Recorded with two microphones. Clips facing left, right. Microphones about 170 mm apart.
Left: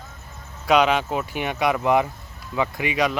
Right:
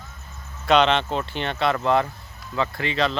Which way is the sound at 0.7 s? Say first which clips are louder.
Even; 10° left (ahead or behind).